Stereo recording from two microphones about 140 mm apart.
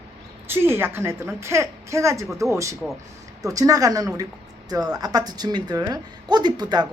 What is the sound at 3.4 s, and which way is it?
Speech, 25° right (ahead or behind).